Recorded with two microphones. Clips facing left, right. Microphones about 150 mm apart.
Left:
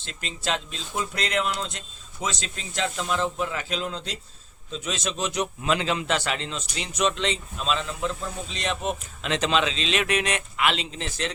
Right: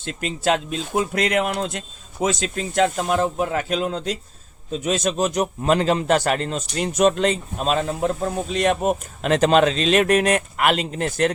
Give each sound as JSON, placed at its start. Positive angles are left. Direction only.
{"t": 0.0, "sound": "a man's voice", "side_deg": -50}